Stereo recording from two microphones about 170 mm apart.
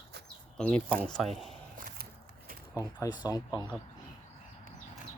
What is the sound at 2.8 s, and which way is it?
Speech, 15° left (ahead or behind).